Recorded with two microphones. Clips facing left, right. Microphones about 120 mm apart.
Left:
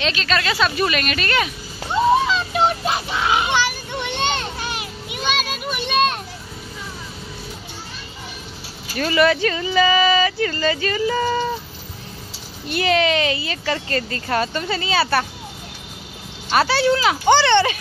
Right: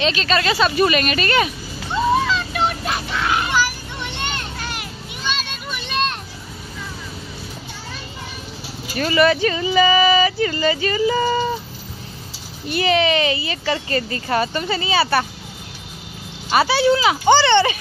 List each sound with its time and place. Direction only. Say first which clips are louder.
0.0 s speech: right 3 dB; 5° right (ahead or behind)
2.2 s a sound: left 2 dB; 20° left (ahead or behind)
4.2 s children playing: left 5 dB; 20° left (ahead or behind)
5.7 s children playing: left 4 dB; 10° left (ahead or behind)
8.9 s speech: right 1 dB; 5° right (ahead or behind)
12.6 s speech: right 1 dB; centre (ahead or behind)
16.4 s speech: right 1 dB; 5° right (ahead or behind)